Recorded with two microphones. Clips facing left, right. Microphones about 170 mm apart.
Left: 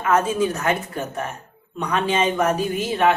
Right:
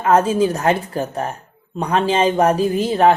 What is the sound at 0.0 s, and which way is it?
Speech, 30° right (ahead or behind).